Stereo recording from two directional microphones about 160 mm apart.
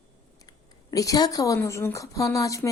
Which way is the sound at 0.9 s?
20° left (ahead or behind).